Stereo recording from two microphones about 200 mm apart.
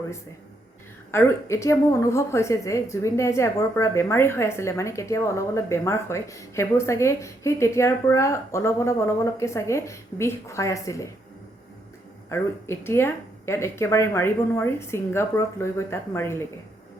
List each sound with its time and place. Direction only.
1.1 s a woman's voice: 15° left (ahead or behind)
12.3 s a woman's voice: 15° left (ahead or behind)